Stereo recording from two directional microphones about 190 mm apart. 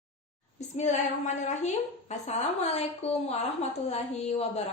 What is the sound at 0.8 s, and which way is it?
A woman's voice, 40° left (ahead or behind).